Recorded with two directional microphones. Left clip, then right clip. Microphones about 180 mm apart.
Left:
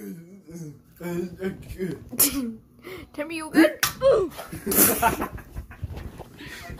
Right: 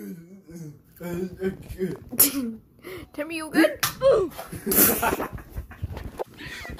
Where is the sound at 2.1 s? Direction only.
5° right (ahead or behind).